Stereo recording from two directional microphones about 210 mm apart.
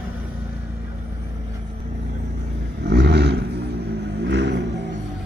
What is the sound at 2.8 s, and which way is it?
Vehicle, 50° right (ahead or behind).